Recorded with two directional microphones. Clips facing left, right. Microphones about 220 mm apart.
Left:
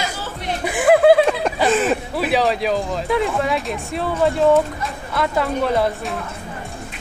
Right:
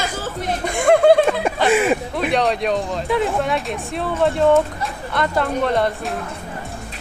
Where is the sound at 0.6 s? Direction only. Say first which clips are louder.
Left 1 dB; 5° left (ahead or behind).